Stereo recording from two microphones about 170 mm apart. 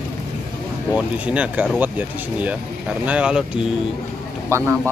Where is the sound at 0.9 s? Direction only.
10° right (ahead or behind).